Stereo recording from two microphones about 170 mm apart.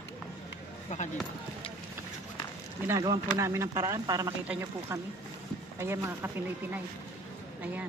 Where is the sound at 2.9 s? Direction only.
20° right (ahead or behind).